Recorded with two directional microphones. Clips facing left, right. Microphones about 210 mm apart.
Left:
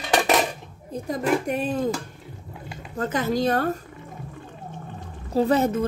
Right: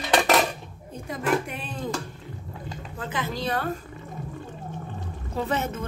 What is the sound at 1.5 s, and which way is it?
Speech, 40° left (ahead or behind).